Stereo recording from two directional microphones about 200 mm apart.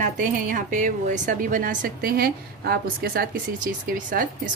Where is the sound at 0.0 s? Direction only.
40° right (ahead or behind).